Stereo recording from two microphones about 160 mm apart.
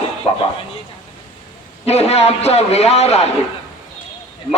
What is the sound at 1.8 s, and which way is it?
A man's voice, 40° left (ahead or behind).